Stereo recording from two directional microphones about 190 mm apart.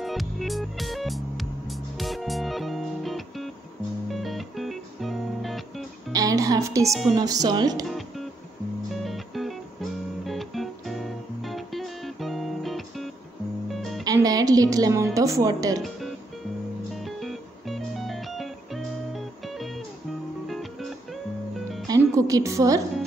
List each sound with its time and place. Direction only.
0.0 s music: centre (ahead or behind)
6.1 s a woman's voice: 20° right (ahead or behind)
6.9 s speech: centre (ahead or behind)
7.2 s speech: 20° right (ahead or behind)
9.0 s music: centre (ahead or behind)
14.0 s music: 20° right (ahead or behind)
15.1 s speech: 15° right (ahead or behind)
16.9 s music: centre (ahead or behind)
21.8 s music: 20° right (ahead or behind)